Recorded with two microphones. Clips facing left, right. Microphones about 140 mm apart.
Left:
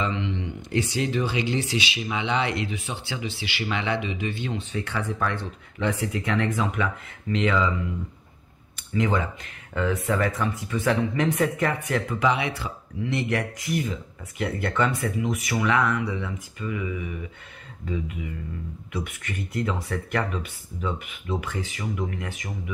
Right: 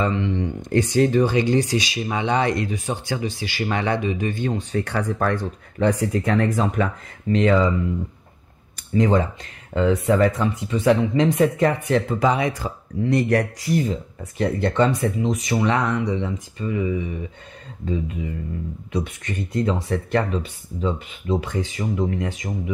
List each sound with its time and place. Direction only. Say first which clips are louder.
0.0 s speech: right 6 dB; 45° right (ahead or behind)
8.9 s speech: right 6 dB; 40° right (ahead or behind)
9.8 s speech: right 7 dB; 25° right (ahead or behind)